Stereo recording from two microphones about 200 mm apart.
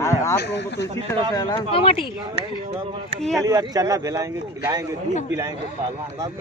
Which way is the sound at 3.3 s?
15° right (ahead or behind).